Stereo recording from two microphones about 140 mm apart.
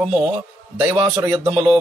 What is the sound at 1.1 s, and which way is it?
Speech, 25° right (ahead or behind).